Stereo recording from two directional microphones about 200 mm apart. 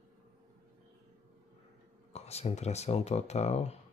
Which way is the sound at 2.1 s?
30° left (ahead or behind).